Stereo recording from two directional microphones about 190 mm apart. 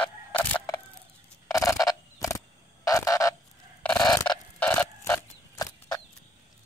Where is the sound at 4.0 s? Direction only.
20° left (ahead or behind).